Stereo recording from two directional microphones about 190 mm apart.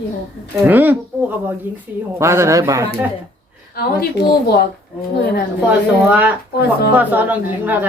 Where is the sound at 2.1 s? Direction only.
15° right (ahead or behind).